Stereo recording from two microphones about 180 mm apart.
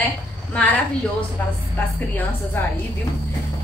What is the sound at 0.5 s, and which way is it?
A woman's voice, 5° left (ahead or behind).